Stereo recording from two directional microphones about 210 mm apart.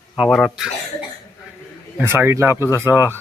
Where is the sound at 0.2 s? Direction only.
Centre (ahead or behind).